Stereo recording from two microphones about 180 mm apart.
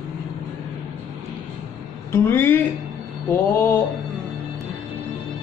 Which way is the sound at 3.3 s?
10° left (ahead or behind).